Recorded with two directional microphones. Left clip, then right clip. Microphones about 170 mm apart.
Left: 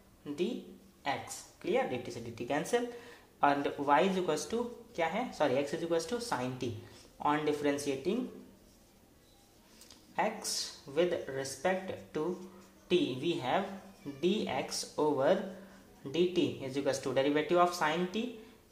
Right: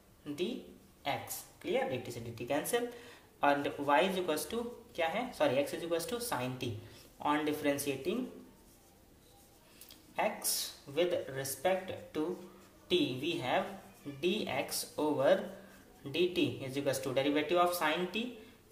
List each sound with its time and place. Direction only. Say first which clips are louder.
1.6 s speech: left 2 dB; 35° left (ahead or behind)
10.1 s speech: left 1 dB; 35° left (ahead or behind)